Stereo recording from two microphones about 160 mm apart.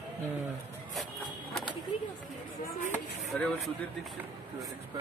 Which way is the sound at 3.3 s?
10° left (ahead or behind).